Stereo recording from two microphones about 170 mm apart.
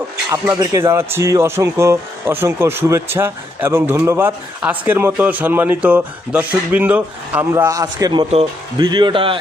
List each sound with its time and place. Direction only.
0.3 s speech: 20° right (ahead or behind)
8.3 s speech: 40° right (ahead or behind)
8.9 s a man's voice: 25° right (ahead or behind)